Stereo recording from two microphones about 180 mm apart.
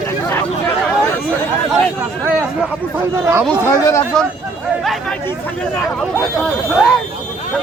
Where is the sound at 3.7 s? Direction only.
15° left (ahead or behind).